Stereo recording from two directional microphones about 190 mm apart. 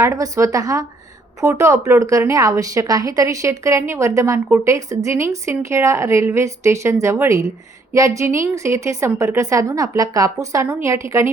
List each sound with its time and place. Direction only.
0.0 s speech: 15° right (ahead or behind)